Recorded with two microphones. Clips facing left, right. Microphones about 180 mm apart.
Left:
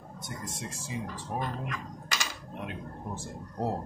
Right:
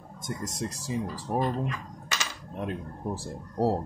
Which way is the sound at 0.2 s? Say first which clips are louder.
Right 7 dB; 40° right (ahead or behind).